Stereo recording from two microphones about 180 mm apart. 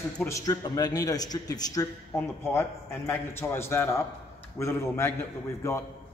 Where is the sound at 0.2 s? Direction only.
20° left (ahead or behind).